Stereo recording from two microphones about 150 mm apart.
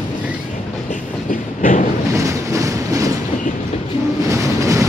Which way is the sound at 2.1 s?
20° right (ahead or behind).